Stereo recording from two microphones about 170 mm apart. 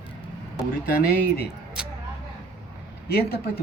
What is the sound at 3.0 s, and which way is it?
Speech, 65° left (ahead or behind).